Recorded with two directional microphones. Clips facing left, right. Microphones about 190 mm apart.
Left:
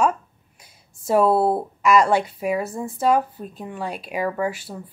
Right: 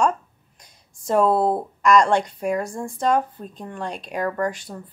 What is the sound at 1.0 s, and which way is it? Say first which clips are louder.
A woman's voice: left 1 dB; 5° left (ahead or behind).